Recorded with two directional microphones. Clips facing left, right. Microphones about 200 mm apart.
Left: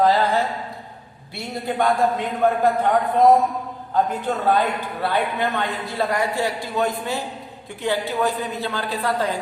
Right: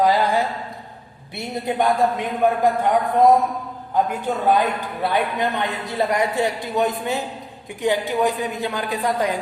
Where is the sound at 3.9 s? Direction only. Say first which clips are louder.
Even; 15° right (ahead or behind).